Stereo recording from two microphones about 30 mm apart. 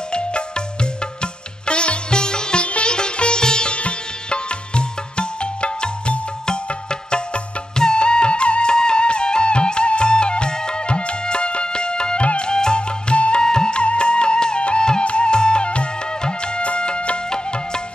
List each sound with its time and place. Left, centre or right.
0.1 s music: left
1.2 s sitar: left
2.6 s sitar: left
6.4 s music: left
12.2 s music: left
12.4 s music: left
13.1 s music: left
13.4 s music: left
17.3 s music: left